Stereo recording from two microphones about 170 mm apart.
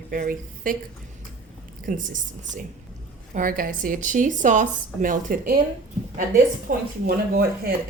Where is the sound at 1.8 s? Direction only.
50° right (ahead or behind).